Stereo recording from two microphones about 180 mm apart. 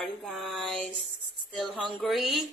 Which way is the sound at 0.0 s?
Centre (ahead or behind).